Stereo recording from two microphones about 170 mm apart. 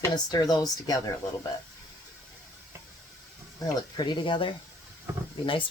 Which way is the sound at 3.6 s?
25° left (ahead or behind).